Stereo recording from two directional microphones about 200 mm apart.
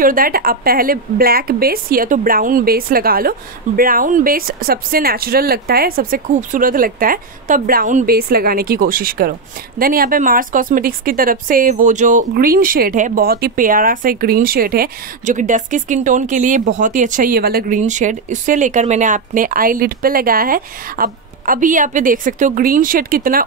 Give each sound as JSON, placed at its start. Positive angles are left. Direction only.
{"t": 0.0, "sound": "speech", "side_deg": -45}